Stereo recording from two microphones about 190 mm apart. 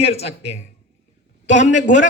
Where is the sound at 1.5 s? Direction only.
40° left (ahead or behind).